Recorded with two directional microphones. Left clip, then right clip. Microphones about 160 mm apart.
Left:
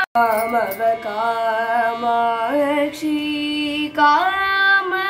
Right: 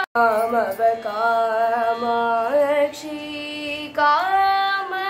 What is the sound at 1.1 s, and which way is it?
Music, 15° right (ahead or behind).